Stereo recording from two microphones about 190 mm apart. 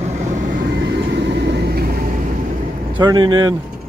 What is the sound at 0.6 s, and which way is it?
Vehicle, 65° right (ahead or behind).